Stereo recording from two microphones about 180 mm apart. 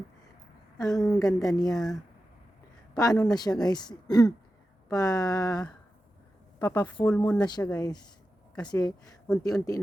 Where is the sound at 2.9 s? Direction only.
20° left (ahead or behind).